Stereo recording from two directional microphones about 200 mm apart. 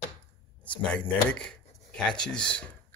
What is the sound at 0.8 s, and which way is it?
Speech, 5° left (ahead or behind).